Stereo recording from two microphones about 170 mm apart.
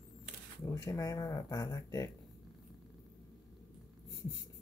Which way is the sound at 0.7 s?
20° left (ahead or behind).